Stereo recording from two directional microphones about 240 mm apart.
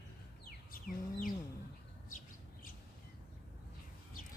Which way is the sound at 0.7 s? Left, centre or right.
Left.